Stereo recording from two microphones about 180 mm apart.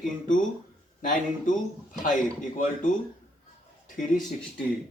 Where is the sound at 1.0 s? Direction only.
45° left (ahead or behind).